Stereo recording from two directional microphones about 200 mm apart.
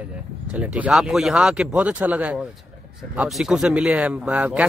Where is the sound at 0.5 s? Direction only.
5° right (ahead or behind).